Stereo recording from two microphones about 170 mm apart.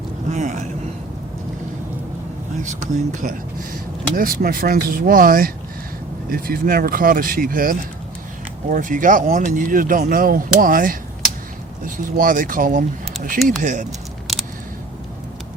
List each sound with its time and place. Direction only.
0.3 s speech: 45° right (ahead or behind)
2.6 s speech: 45° right (ahead or behind)
12.1 s speech: 55° right (ahead or behind)